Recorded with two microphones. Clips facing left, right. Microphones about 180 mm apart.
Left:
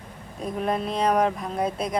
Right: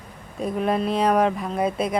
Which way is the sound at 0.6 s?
Centre (ahead or behind).